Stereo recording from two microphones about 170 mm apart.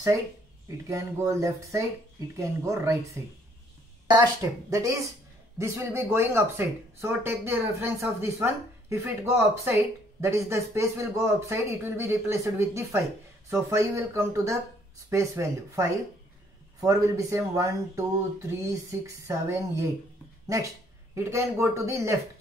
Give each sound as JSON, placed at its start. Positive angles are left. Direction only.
{"t": 0.8, "sound": "speech", "side_deg": -15}
{"t": 4.1, "sound": "speech", "side_deg": -20}
{"t": 21.1, "sound": "speech", "side_deg": -15}